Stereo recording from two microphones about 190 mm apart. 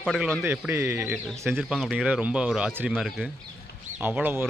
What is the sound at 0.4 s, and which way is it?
Speech, 10° right (ahead or behind).